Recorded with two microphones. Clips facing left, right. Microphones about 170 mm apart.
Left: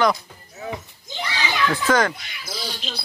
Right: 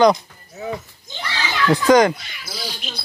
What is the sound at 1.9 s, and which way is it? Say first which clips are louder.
Speech: right 8 dB; 15° right (ahead or behind).